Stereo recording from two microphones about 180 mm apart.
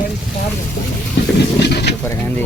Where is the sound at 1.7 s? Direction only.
70° left (ahead or behind).